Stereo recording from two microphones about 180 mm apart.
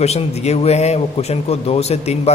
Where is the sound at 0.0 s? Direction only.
35° left (ahead or behind).